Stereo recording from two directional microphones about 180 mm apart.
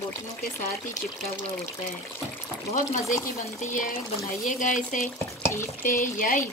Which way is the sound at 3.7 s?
50° left (ahead or behind).